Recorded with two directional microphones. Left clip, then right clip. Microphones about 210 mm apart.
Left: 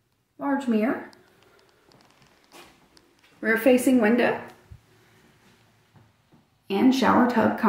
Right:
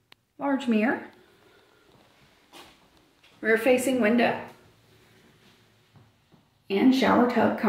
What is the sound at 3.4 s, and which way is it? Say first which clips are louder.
Speech: left 2 dB; 25° left (ahead or behind).